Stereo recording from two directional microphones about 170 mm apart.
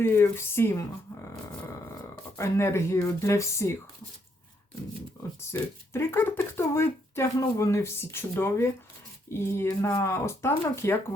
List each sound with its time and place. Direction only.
0.0 s speech: 15° left (ahead or behind)
5.4 s speech: 15° left (ahead or behind)